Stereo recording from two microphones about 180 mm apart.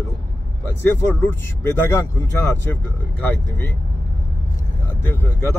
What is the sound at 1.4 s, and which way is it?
Speech, 15° left (ahead or behind).